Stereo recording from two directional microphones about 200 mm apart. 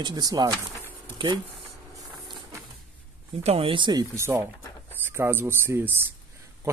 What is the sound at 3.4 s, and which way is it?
Speech, 30° right (ahead or behind).